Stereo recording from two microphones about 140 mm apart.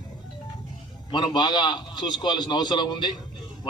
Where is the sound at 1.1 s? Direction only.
30° left (ahead or behind).